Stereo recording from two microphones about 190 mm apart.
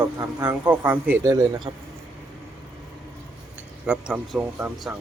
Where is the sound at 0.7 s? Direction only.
10° right (ahead or behind).